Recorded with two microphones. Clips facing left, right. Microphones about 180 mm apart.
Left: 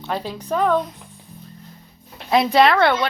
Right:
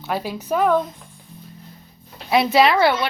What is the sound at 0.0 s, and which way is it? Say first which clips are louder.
Speech: right 1 dB; 10° right (ahead or behind).